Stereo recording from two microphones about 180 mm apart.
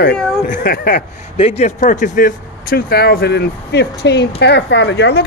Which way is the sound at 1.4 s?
40° left (ahead or behind).